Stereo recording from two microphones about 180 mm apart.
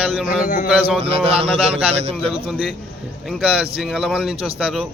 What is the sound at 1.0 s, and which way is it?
Speech, 35° right (ahead or behind).